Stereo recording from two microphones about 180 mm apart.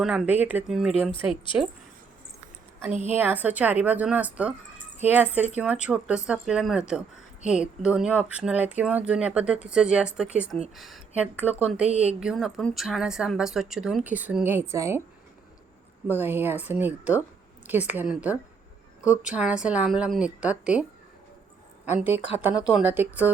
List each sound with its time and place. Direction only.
0.0 s speech: 5° right (ahead or behind)
3.2 s a woman's voice: 10° right (ahead or behind)
11.4 s a woman's voice: 40° right (ahead or behind)
12.2 s speech: centre (ahead or behind)
16.0 s a woman's voice: 10° right (ahead or behind)
21.8 s a woman's voice: 10° right (ahead or behind)